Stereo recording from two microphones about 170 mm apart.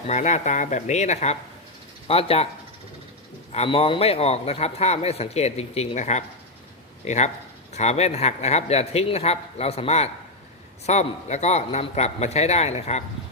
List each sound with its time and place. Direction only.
0.1 s a man's voice: 40° left (ahead or behind)
3.5 s a man's voice: 35° left (ahead or behind)